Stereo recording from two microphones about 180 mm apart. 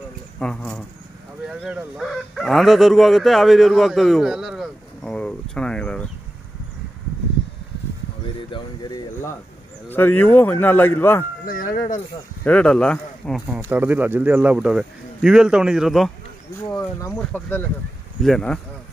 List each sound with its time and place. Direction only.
0.4 s speech: 5° left (ahead or behind)
8.4 s a sound: 25° left (ahead or behind)
9.8 s speech: 10° left (ahead or behind)
11.4 s speech: 50° left (ahead or behind)
12.4 s speech: 5° left (ahead or behind)
13.5 s speech: 10° right (ahead or behind)
17.1 s speech: 5° left (ahead or behind)